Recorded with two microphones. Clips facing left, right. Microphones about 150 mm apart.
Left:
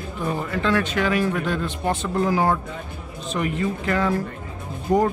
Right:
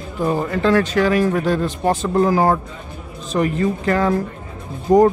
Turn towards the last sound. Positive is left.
turn(degrees=-40)  # may be behind; listen again after turning